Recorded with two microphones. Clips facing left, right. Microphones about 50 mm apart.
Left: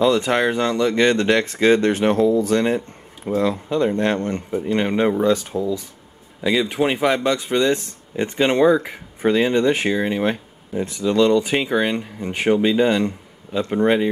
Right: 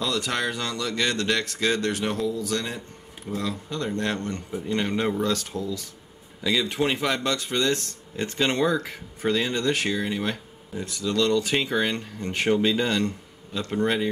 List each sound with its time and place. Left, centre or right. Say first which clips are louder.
0.0 s speech: left 9 dB; left